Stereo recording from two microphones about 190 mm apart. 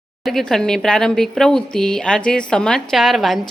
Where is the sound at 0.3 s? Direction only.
Centre (ahead or behind).